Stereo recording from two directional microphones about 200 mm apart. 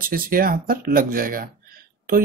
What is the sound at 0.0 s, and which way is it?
Speech, 45° right (ahead or behind).